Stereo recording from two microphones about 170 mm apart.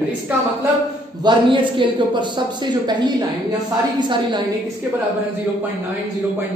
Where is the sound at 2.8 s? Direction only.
25° right (ahead or behind).